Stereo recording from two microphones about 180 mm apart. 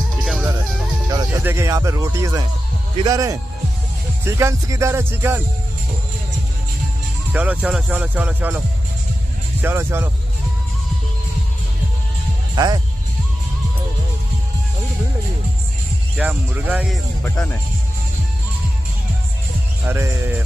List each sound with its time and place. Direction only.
0.2 s music: 5° right (ahead or behind)
1.4 s speech: 15° right (ahead or behind)
7.3 s speech: 5° right (ahead or behind)
12.5 s speech: 20° right (ahead or behind)
16.2 s speech: 10° right (ahead or behind)
17.2 s speech: 10° left (ahead or behind)
19.8 s speech: 10° right (ahead or behind)